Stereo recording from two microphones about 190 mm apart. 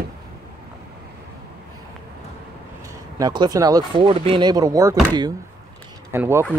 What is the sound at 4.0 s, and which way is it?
Speech, 30° right (ahead or behind).